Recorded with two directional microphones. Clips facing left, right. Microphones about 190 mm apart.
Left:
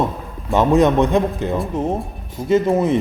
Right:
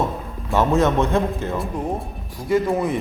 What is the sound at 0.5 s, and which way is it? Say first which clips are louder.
Speech: left 4 dB; 15° left (ahead or behind).